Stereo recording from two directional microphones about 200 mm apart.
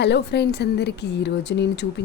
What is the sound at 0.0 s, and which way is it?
A woman's voice, 55° left (ahead or behind).